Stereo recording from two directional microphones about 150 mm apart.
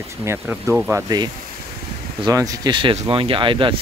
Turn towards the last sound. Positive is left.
turn(degrees=-35)  # may be behind; listen again after turning